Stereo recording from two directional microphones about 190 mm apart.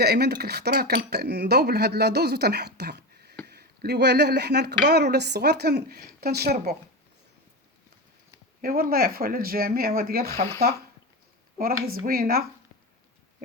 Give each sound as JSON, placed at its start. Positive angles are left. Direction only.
{"t": 0.0, "sound": "speech", "side_deg": -60}
{"t": 8.6, "sound": "speech", "side_deg": -50}
{"t": 11.5, "sound": "speech", "side_deg": -50}